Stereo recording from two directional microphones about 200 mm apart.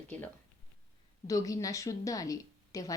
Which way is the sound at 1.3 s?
15° left (ahead or behind).